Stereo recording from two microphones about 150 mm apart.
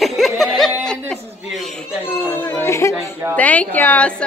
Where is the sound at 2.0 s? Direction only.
15° left (ahead or behind).